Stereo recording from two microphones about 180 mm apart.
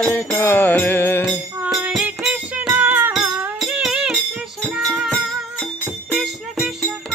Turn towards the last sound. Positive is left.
turn(degrees=-5)  # may be behind; listen again after turning